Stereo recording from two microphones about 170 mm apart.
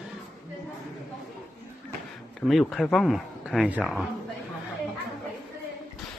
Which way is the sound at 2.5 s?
Centre (ahead or behind).